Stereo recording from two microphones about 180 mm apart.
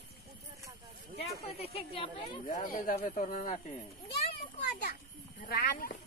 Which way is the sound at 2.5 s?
50° left (ahead or behind).